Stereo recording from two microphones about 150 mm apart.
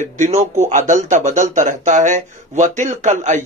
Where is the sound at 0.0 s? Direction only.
55° right (ahead or behind).